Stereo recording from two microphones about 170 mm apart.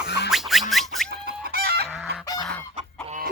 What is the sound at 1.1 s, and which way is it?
Chicken, 65° right (ahead or behind).